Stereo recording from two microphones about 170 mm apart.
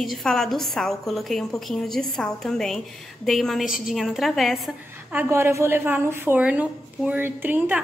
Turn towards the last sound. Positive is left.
turn(degrees=-10)  # may be behind; listen again after turning